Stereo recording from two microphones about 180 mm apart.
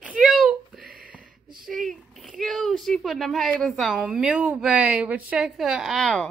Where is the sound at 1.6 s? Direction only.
Centre (ahead or behind).